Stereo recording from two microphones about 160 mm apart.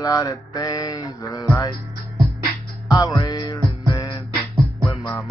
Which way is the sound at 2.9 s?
25° left (ahead or behind).